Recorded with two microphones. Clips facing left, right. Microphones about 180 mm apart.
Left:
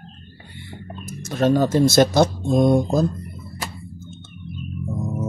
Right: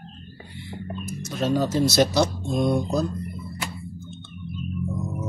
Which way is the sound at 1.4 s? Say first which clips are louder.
Left 5 dB; 55° left (ahead or behind).